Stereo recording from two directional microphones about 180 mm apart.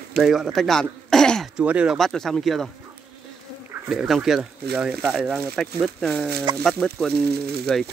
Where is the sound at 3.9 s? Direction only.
Centre (ahead or behind).